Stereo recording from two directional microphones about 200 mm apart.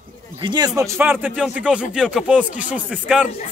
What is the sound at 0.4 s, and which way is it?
Speech, 20° right (ahead or behind).